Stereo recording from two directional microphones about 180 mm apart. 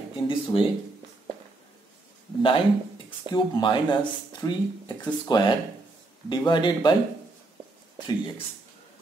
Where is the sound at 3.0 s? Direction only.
25° left (ahead or behind).